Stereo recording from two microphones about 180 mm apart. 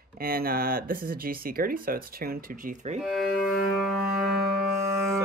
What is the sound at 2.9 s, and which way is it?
Music, centre (ahead or behind).